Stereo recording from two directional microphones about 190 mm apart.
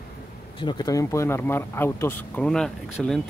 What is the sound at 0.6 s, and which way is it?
Speech, 20° left (ahead or behind).